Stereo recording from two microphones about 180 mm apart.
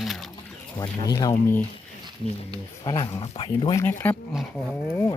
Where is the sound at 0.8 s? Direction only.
20° left (ahead or behind).